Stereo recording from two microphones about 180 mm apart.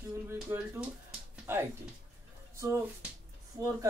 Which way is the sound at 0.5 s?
15° right (ahead or behind).